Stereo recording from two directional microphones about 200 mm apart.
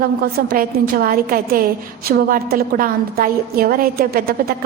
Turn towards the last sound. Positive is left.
turn(degrees=-50)  # may be behind; listen again after turning